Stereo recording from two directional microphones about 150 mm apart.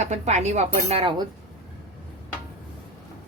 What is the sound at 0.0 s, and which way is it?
Speech, 50° right (ahead or behind).